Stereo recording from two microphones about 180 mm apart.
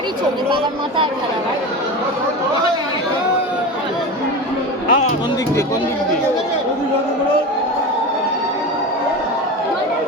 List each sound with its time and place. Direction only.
4.9 s music: 40° left (ahead or behind)